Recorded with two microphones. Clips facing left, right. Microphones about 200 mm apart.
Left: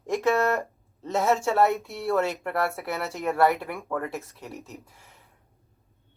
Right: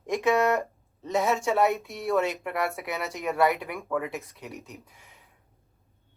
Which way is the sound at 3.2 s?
Centre (ahead or behind).